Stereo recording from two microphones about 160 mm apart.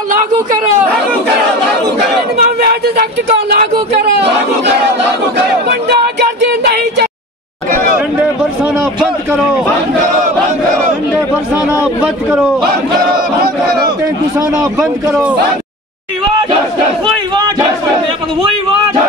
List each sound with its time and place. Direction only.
2.3 s speech: 70° right (ahead or behind)
4.0 s chatter: 90° right
5.7 s a sound: 90° right